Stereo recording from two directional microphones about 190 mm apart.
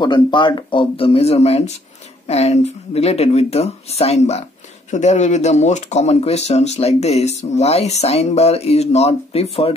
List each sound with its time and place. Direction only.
0.0 s speech: 25° left (ahead or behind)